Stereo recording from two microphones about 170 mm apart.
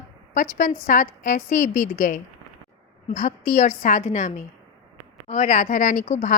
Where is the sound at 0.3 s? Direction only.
50° left (ahead or behind).